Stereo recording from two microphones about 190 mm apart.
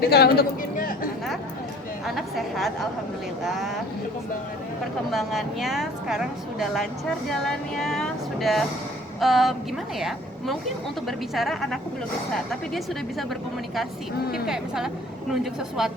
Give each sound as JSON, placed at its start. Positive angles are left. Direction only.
{"t": 0.1, "sound": "speech", "side_deg": 55}
{"t": 2.0, "sound": "a woman's voice", "side_deg": 0}
{"t": 5.1, "sound": "a woman's voice", "side_deg": 0}
{"t": 14.4, "sound": "a woman's voice", "side_deg": 0}